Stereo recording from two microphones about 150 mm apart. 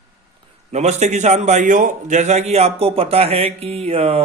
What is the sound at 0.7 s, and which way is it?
A man's voice, 50° right (ahead or behind).